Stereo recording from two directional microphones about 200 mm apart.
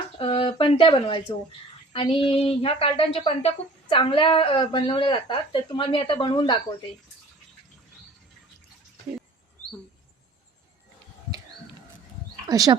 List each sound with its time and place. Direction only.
0.2 s a woman's voice: 25° left (ahead or behind)
12.5 s speech: 20° right (ahead or behind)